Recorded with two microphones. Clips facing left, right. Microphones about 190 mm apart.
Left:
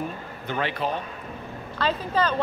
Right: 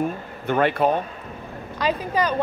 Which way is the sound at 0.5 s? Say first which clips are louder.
Right 8 dB; 50° right (ahead or behind).